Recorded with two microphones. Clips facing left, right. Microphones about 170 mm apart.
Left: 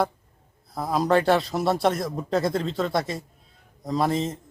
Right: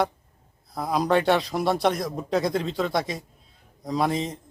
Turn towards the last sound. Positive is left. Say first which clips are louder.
# left 1 dB
turn(degrees=0)  # may be behind; listen again after turning